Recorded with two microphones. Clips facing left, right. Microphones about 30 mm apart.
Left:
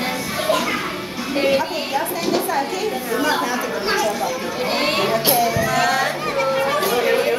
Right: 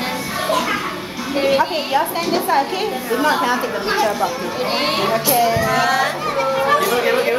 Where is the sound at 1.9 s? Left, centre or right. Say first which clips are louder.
Right 2 dB; right.